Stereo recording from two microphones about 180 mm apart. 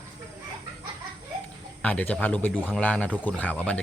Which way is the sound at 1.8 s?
5° left (ahead or behind).